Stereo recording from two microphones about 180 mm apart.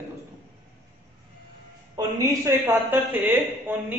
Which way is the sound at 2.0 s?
20° right (ahead or behind).